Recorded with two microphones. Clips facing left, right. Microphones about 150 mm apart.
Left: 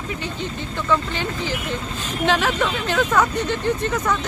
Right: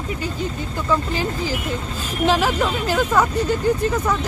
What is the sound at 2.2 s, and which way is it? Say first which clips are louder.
Speech: right 2 dB; 5° right (ahead or behind).